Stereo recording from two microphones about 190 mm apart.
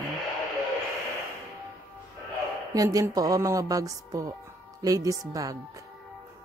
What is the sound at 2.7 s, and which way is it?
Speech, 20° right (ahead or behind).